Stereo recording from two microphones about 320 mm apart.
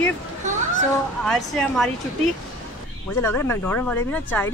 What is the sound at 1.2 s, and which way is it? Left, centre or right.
Speech, centre.